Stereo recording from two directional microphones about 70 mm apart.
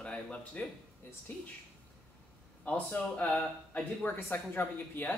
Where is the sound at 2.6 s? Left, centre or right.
Left.